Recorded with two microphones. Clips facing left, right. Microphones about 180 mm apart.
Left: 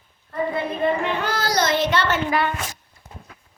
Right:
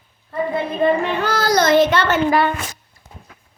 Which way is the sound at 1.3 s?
45° right (ahead or behind).